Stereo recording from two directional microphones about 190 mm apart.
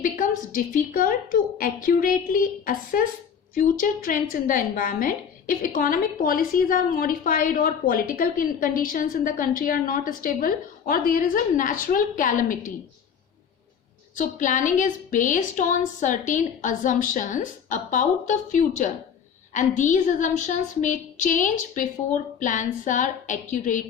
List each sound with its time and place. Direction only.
0.0 s a woman's voice: 45° left (ahead or behind)
14.2 s a woman's voice: 45° left (ahead or behind)